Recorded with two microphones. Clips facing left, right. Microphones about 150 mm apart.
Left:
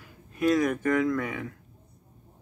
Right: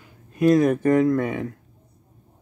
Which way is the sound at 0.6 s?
30° right (ahead or behind).